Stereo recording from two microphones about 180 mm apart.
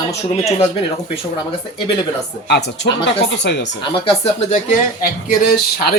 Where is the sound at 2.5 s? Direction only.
70° left (ahead or behind).